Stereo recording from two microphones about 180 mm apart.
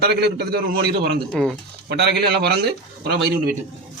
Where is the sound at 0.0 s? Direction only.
65° right (ahead or behind).